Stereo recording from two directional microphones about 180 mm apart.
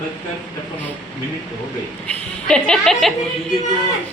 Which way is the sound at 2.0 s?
5° left (ahead or behind).